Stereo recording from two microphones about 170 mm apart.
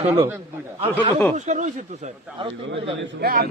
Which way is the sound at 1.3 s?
45° right (ahead or behind).